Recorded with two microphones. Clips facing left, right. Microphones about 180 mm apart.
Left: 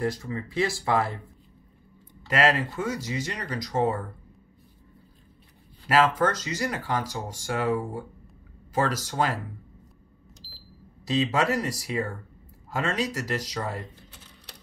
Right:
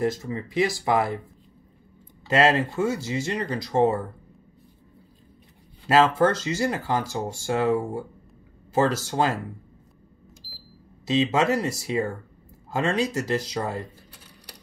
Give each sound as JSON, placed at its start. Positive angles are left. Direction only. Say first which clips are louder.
{"t": 0.0, "sound": "speech", "louder": "right 3 dB", "side_deg": -20}
{"t": 2.2, "sound": "speech", "louder": "right 3 dB", "side_deg": -25}
{"t": 6.1, "sound": "speech", "louder": "right 4 dB", "side_deg": -25}
{"t": 11.1, "sound": "speech", "louder": "right 3 dB", "side_deg": -20}